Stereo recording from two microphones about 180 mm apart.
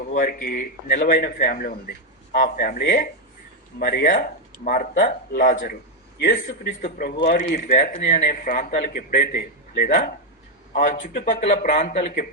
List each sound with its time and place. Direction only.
0.1 s speech: 50° left (ahead or behind)
10.7 s speech: 45° left (ahead or behind)